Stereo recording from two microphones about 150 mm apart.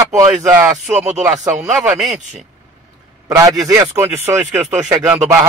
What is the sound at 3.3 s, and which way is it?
A man's voice, 20° right (ahead or behind).